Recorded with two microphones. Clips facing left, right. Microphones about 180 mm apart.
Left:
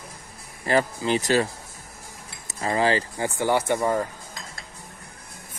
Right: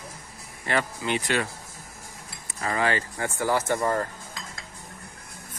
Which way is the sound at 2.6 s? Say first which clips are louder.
Left 4 dB; 30° left (ahead or behind).